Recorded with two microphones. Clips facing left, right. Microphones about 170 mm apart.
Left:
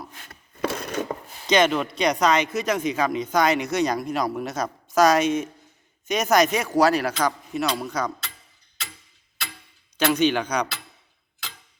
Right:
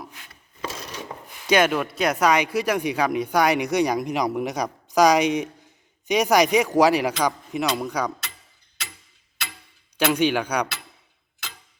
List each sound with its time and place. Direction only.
0.1 s chopping: 50° left (ahead or behind)
1.5 s speech: 10° right (ahead or behind)
10.0 s speech: 10° right (ahead or behind)